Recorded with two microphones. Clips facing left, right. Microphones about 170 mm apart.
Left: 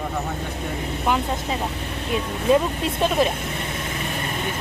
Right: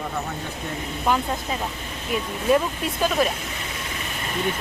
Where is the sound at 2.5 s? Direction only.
25° left (ahead or behind).